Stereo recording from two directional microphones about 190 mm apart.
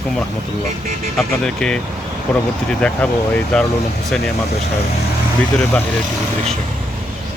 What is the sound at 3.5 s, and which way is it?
Speech, 5° left (ahead or behind).